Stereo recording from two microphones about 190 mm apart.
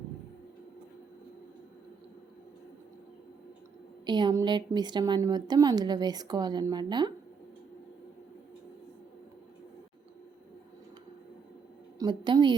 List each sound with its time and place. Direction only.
4.0 s speech: 25° right (ahead or behind)
11.9 s speech: 25° right (ahead or behind)